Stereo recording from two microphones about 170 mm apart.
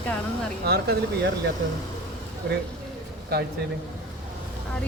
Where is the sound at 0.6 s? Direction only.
70° right (ahead or behind).